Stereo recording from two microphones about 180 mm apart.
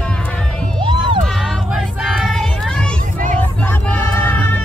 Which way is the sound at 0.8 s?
25° right (ahead or behind).